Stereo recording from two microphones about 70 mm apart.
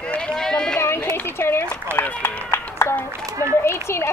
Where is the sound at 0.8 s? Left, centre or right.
Left.